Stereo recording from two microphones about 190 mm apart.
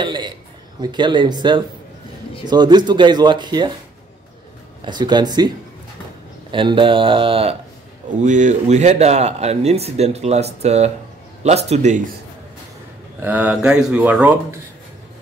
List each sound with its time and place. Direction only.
0.0 s speech: 25° right (ahead or behind)
4.8 s speech: 25° right (ahead or behind)
6.5 s speech: 25° right (ahead or behind)
8.2 s speech: 40° right (ahead or behind)
13.2 s speech: 10° right (ahead or behind)